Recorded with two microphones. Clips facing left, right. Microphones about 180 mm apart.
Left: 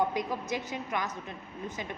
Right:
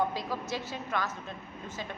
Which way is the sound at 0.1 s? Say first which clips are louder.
Left 2 dB; 20° left (ahead or behind).